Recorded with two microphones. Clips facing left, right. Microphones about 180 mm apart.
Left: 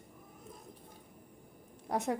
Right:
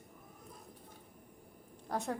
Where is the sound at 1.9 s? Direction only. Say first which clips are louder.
Left 4 dB; 20° left (ahead or behind).